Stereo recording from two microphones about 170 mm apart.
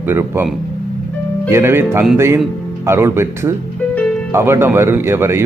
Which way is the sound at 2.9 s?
15° right (ahead or behind).